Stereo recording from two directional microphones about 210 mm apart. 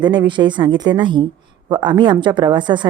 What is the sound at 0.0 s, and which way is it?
A woman's voice, 20° right (ahead or behind).